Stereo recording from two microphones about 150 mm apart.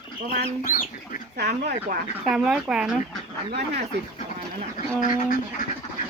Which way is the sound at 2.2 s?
5° right (ahead or behind).